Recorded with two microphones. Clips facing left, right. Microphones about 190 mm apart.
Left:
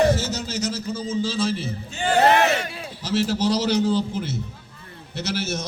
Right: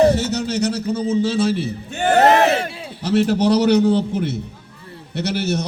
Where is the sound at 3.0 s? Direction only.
60° right (ahead or behind).